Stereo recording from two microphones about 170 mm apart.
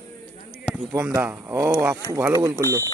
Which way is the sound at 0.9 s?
15° right (ahead or behind).